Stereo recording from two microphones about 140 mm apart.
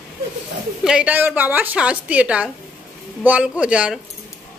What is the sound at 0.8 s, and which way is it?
A woman's voice, 10° right (ahead or behind).